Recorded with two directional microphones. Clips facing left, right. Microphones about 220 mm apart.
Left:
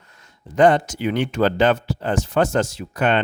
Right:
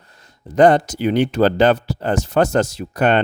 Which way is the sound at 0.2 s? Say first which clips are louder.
Right 3 dB; 40° right (ahead or behind).